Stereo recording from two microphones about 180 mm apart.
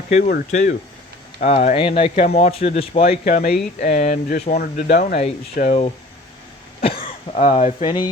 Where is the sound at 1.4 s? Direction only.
40° left (ahead or behind).